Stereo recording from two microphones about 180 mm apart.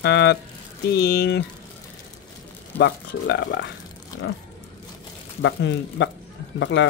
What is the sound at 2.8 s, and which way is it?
Speech, 70° left (ahead or behind).